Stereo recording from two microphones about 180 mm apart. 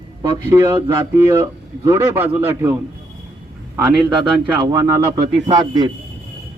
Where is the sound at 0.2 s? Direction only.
15° right (ahead or behind).